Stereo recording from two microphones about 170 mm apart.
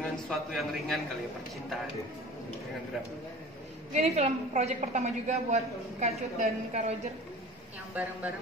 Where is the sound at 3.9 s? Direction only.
40° right (ahead or behind).